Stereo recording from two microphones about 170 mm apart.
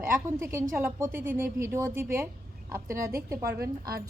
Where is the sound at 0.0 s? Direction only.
15° right (ahead or behind).